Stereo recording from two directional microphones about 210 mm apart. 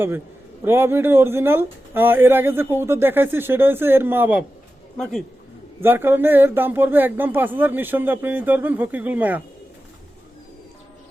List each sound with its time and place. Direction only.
0.6 s speech: 10° right (ahead or behind)
5.8 s speech: 10° right (ahead or behind)